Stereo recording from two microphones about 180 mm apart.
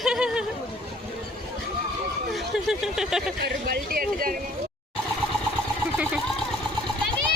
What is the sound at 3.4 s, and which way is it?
Speech, 60° right (ahead or behind).